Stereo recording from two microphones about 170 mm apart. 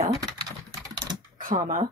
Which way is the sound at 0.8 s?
25° right (ahead or behind).